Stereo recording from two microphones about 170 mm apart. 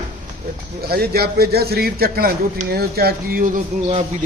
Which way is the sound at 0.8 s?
65° right (ahead or behind).